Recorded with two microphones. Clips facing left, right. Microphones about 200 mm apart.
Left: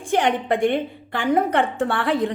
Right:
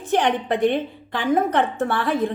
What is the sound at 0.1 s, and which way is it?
A woman's voice, 10° left (ahead or behind).